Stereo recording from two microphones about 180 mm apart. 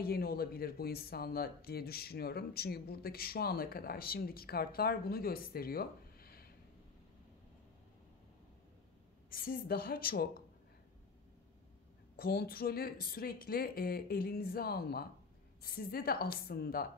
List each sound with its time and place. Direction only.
0.0 s speech: 55° left (ahead or behind)
9.3 s speech: 55° left (ahead or behind)
12.2 s speech: 60° left (ahead or behind)